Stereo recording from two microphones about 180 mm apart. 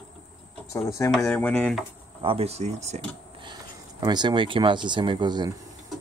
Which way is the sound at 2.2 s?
35° right (ahead or behind).